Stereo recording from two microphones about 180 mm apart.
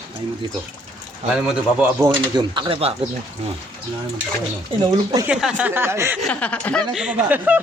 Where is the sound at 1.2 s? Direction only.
5° right (ahead or behind).